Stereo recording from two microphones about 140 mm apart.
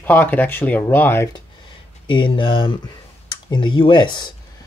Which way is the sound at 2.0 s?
35° left (ahead or behind).